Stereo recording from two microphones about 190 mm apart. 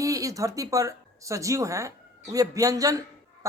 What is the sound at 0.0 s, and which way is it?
Speech, 15° right (ahead or behind).